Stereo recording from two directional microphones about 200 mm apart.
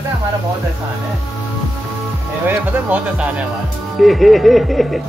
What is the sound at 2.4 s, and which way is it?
Speech, 10° right (ahead or behind).